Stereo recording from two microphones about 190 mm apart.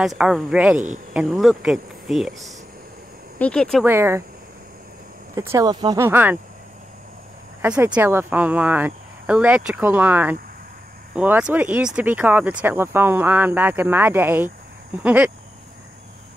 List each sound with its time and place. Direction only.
0.0 s speech: centre (ahead or behind)
0.7 s speech: 40° right (ahead or behind)
1.1 s speech: centre (ahead or behind)
3.8 s speech: 15° right (ahead or behind)
5.3 s speech: 15° right (ahead or behind)
7.6 s speech: 5° right (ahead or behind)